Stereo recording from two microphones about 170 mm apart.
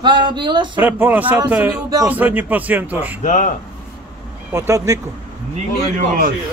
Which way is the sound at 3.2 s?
45° left (ahead or behind).